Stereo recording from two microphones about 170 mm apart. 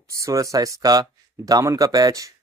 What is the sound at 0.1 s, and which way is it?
Speech, 20° right (ahead or behind).